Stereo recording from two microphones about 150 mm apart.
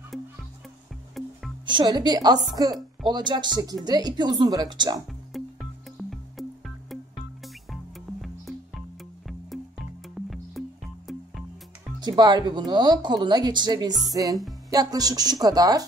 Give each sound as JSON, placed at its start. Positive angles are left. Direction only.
{"t": 0.1, "sound": "music", "side_deg": 0}
{"t": 1.7, "sound": "speech", "side_deg": -30}
{"t": 5.3, "sound": "music", "side_deg": 0}
{"t": 12.0, "sound": "speech", "side_deg": -25}